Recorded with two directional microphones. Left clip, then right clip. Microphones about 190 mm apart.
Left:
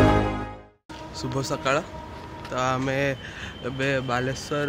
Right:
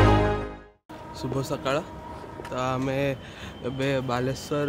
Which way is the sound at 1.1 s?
Centre (ahead or behind).